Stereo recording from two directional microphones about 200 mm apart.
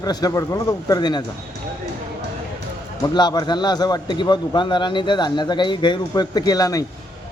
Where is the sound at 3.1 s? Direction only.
20° left (ahead or behind).